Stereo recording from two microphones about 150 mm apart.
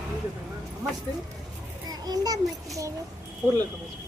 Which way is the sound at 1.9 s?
25° right (ahead or behind).